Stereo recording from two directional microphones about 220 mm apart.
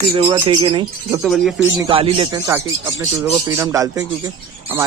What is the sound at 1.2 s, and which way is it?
Speech, centre (ahead or behind).